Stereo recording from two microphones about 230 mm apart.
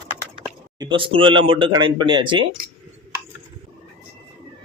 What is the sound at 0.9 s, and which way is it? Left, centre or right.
Speech, right.